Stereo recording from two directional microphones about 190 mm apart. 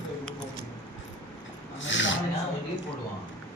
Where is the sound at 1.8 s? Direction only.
75° left (ahead or behind).